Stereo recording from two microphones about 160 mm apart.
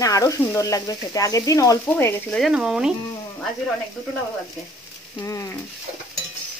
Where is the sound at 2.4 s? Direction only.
5° right (ahead or behind).